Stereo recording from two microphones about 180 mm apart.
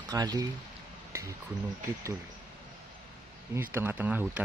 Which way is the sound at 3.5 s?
10° right (ahead or behind).